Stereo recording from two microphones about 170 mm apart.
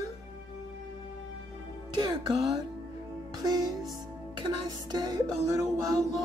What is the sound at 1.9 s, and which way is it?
Music, 30° right (ahead or behind).